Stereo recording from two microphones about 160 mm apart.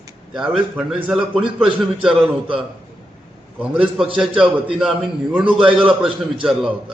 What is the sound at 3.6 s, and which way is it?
A man's voice, 10° right (ahead or behind).